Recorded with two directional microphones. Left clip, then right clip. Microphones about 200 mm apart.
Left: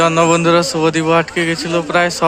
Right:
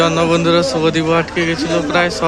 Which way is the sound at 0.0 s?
35° left (ahead or behind).